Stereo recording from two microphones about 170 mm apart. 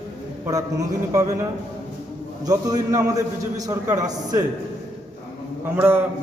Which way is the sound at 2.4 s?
20° right (ahead or behind).